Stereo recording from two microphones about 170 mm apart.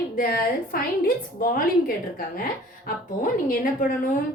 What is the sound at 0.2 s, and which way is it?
Speech, 60° left (ahead or behind).